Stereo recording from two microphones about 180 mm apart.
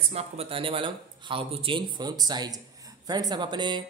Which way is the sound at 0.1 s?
35° right (ahead or behind).